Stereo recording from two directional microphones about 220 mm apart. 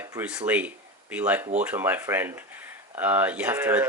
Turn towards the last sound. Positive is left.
turn(degrees=-10)  # may be behind; listen again after turning